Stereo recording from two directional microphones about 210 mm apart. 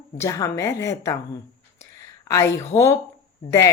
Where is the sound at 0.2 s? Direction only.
15° left (ahead or behind).